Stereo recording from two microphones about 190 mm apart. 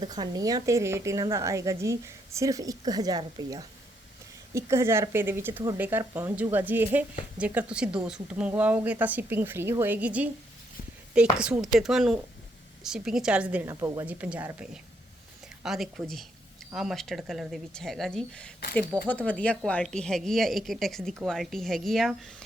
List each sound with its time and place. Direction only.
0.0 s speech: 20° right (ahead or behind); by 22.4 s centre (ahead or behind)